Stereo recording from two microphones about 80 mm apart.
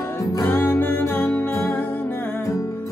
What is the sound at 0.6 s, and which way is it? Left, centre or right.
Music, left.